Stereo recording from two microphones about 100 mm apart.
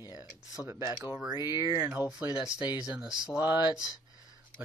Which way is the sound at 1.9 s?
10° right (ahead or behind).